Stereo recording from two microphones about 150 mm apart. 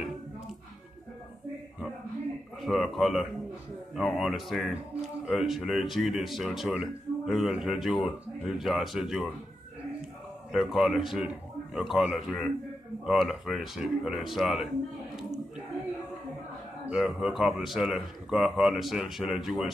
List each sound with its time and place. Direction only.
2.6 s speech: centre (ahead or behind)
10.5 s speech: centre (ahead or behind)
16.9 s speech: 5° right (ahead or behind)